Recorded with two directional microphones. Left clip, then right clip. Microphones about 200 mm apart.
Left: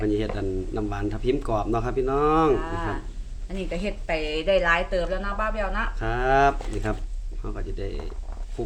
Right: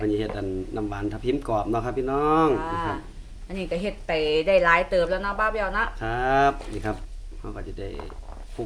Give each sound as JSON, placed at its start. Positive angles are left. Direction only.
{"t": 0.0, "sound": "speech", "side_deg": 5}
{"t": 2.6, "sound": "a woman's voice", "side_deg": -30}
{"t": 6.0, "sound": "speech", "side_deg": 5}